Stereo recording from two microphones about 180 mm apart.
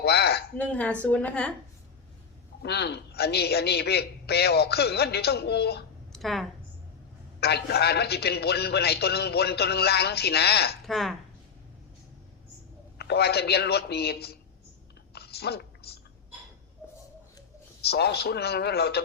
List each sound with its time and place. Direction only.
0.0 s a sound: 65° left (ahead or behind)
0.5 s a woman's voice: 10° left (ahead or behind)
2.6 s a man's voice: 65° left (ahead or behind)
6.1 s speech: centre (ahead or behind)
7.3 s a man's voice: 65° left (ahead or behind)
10.8 s speech: centre (ahead or behind)
13.0 s a man's voice: 65° left (ahead or behind)
15.1 s a sound: 60° left (ahead or behind)
17.8 s a man's voice: 65° left (ahead or behind)